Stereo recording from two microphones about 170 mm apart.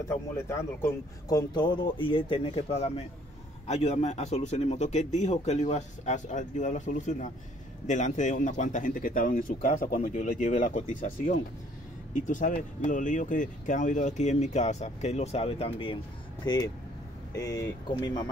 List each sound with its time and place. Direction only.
0.1 s speech: 15° left (ahead or behind)